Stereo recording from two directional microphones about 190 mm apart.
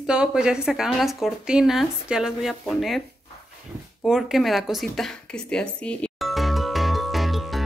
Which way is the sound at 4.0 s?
Centre (ahead or behind).